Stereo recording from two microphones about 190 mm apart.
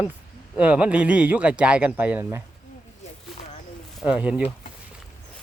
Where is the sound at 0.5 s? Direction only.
5° right (ahead or behind).